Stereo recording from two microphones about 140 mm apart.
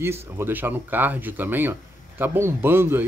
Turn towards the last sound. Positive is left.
turn(degrees=-15)  # may be behind; listen again after turning